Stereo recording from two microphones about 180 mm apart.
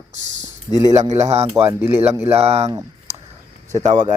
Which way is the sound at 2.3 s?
35° right (ahead or behind).